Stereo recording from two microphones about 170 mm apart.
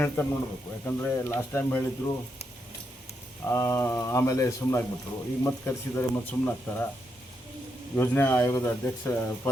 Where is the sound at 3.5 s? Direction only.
15° left (ahead or behind).